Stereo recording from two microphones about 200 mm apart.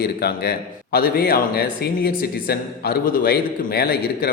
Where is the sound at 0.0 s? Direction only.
50° left (ahead or behind).